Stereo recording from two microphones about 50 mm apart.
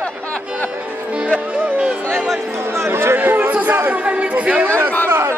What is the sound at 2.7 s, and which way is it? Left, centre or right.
Chatter, right.